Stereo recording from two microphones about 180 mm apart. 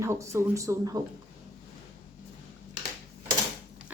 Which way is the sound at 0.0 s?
15° right (ahead or behind).